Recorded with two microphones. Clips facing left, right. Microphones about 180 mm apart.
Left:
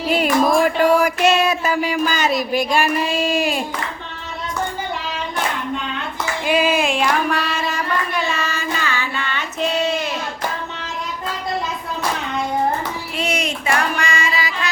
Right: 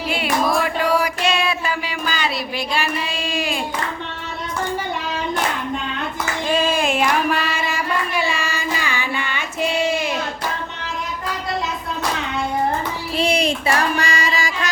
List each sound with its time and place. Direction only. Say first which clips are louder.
0.1 s music: left 4 dB; 45° left (ahead or behind)
6.4 s female singing: left 2 dB; 10° left (ahead or behind); by 10.1 s 10° right (ahead or behind)
13.1 s child singing: right 5 dB; 30° right (ahead or behind)